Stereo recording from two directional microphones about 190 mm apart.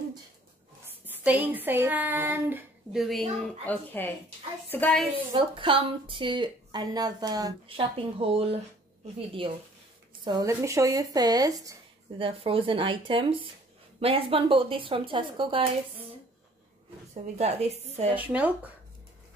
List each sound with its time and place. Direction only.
1.0 s a woman's voice: 10° right (ahead or behind); by 5.0 s 10° left (ahead or behind)
5.3 s a woman's voice: 25° right (ahead or behind)
10.2 s a woman's voice: 20° right (ahead or behind)
17.1 s a woman's voice: 35° right (ahead or behind)
18.1 s speech: 10° right (ahead or behind)